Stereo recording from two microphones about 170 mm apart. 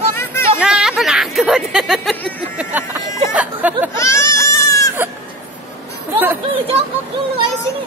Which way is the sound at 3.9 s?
20° left (ahead or behind).